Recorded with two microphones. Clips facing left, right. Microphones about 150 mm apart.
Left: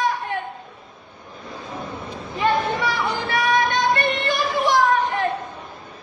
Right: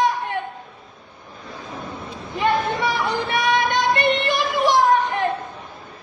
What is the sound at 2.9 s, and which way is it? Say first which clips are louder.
Female singing: right 1 dB; 20° right (ahead or behind).